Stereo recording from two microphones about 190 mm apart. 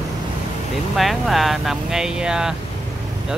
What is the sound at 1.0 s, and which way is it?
Speech, centre (ahead or behind).